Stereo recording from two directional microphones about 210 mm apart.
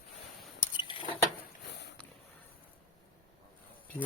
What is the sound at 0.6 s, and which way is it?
Squish, 20° left (ahead or behind).